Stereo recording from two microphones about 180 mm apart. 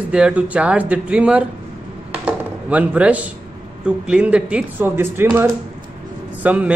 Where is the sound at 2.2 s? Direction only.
10° right (ahead or behind).